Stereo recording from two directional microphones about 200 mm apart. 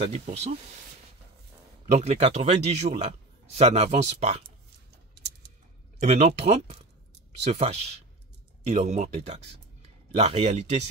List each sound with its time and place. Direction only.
0.0 s a man's voice: 30° right (ahead or behind)
1.9 s a man's voice: 35° right (ahead or behind)
5.1 s a sound: 55° right (ahead or behind)
5.9 s a man's voice: 35° right (ahead or behind)